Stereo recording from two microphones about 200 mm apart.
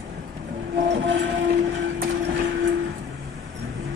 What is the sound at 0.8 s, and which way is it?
Train, 60° right (ahead or behind).